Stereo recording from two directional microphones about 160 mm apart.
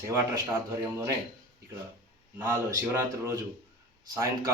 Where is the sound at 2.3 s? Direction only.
15° right (ahead or behind).